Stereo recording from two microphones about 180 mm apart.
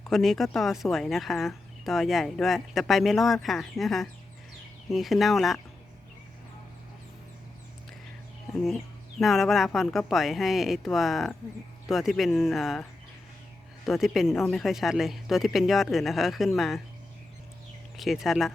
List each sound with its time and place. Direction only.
0.1 s speech: centre (ahead or behind)
8.6 s speech: centre (ahead or behind)
13.8 s speech: centre (ahead or behind)
17.9 s speech: centre (ahead or behind)